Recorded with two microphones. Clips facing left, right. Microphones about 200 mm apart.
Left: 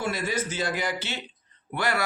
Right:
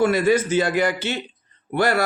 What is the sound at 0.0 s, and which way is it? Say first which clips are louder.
Speech: right 11 dB; 60° right (ahead or behind).